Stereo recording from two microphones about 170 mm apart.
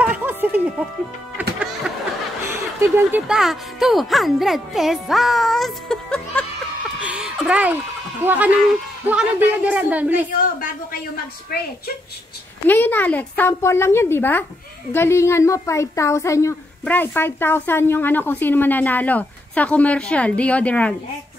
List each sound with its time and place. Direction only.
0.0 s music: 10° right (ahead or behind)
1.4 s a sound: 10° right (ahead or behind)
2.5 s speech: 15° right (ahead or behind); by 6.4 s 5° left (ahead or behind)
7.0 s a sound: 5° right (ahead or behind)
9.0 s speech: 10° right (ahead or behind)
11.5 s a woman's voice: 60° left (ahead or behind)
12.6 s a woman's voice: 10° left (ahead or behind)